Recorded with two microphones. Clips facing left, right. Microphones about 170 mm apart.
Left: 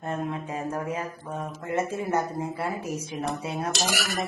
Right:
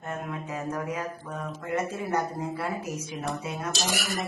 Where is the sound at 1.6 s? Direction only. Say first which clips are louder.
Left 2 dB; 25° left (ahead or behind).